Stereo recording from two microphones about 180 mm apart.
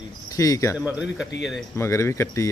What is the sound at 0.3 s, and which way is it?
Speech, 20° left (ahead or behind).